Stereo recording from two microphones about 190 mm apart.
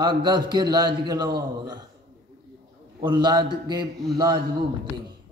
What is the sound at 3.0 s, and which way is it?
Speech, 20° right (ahead or behind).